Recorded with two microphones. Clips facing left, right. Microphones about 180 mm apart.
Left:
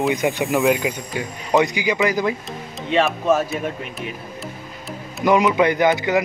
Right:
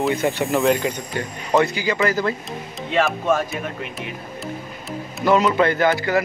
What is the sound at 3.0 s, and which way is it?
Speech, centre (ahead or behind).